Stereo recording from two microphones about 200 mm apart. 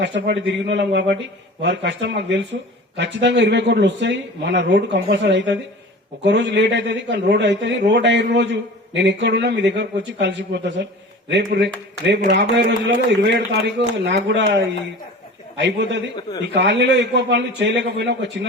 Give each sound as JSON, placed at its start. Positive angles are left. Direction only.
{"t": 0.0, "sound": "a man's voice", "side_deg": -60}